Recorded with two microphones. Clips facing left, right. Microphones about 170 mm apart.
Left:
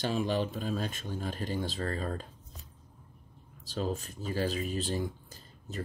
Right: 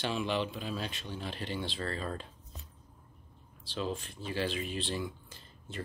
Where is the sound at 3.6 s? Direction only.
45° left (ahead or behind).